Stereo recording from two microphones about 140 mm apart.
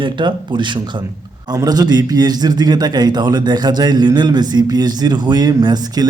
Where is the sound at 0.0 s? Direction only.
35° right (ahead or behind).